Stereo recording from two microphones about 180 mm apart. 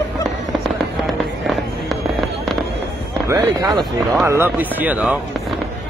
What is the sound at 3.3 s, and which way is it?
Speech, 20° right (ahead or behind).